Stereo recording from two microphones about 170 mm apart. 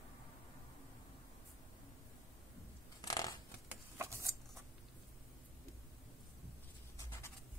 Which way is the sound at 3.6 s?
15° right (ahead or behind).